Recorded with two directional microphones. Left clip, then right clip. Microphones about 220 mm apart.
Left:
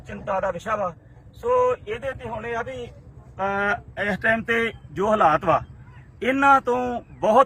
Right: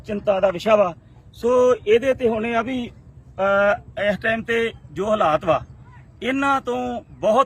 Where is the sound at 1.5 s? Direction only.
55° right (ahead or behind).